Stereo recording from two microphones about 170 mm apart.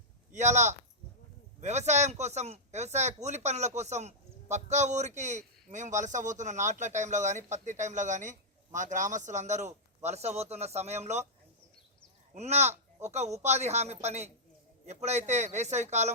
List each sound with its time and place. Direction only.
0.3 s speech: 45° right (ahead or behind)
12.3 s speech: 40° right (ahead or behind)